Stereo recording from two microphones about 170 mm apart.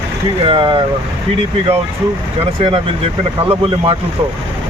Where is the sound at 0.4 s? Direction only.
30° right (ahead or behind).